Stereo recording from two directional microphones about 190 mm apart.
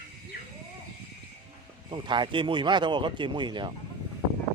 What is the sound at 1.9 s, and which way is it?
Speech, 25° right (ahead or behind).